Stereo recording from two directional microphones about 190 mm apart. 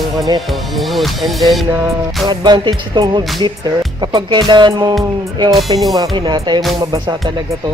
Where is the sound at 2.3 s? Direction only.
25° right (ahead or behind).